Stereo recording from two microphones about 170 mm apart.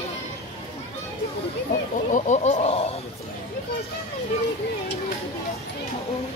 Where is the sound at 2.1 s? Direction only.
45° left (ahead or behind).